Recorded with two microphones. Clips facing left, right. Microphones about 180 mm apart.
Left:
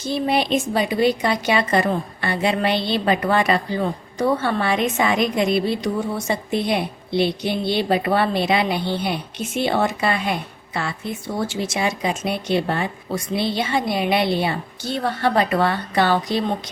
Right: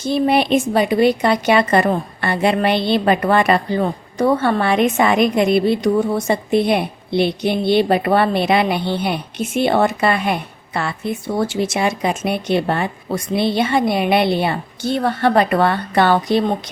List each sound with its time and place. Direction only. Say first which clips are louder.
0.1 s a woman's voice: right 5 dB; 60° right (ahead or behind)